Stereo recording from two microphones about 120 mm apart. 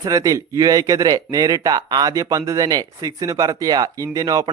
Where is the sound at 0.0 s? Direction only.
30° right (ahead or behind).